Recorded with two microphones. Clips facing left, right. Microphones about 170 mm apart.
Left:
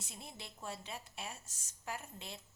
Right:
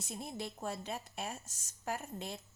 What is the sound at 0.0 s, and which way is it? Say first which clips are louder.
A woman's voice: right 9 dB; 45° right (ahead or behind).